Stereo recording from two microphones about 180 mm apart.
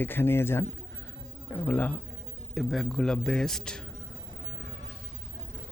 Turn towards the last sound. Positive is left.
turn(degrees=5)  # may be behind; listen again after turning